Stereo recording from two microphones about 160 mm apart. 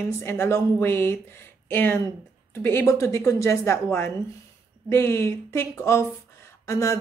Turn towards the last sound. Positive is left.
turn(degrees=20)  # may be behind; listen again after turning